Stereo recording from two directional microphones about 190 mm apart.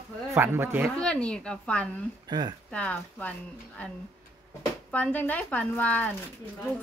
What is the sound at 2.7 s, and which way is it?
Speech, 5° left (ahead or behind).